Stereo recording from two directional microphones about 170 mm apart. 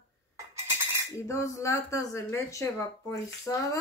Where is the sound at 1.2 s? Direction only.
15° left (ahead or behind).